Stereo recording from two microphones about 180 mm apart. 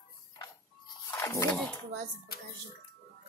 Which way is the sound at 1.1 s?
20° left (ahead or behind).